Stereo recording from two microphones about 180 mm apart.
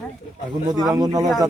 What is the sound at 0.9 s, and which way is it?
Speech, 20° right (ahead or behind).